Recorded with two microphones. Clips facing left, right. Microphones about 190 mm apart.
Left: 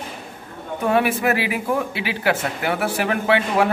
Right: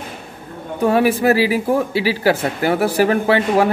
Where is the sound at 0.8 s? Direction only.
35° right (ahead or behind).